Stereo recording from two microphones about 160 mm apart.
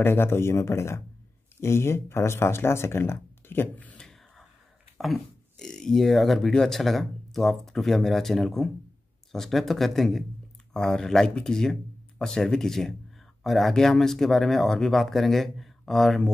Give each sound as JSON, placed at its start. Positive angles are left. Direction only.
{"t": 0.0, "sound": "speech", "side_deg": 15}